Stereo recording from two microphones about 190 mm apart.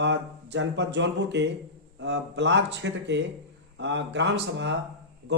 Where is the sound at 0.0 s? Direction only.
65° right (ahead or behind).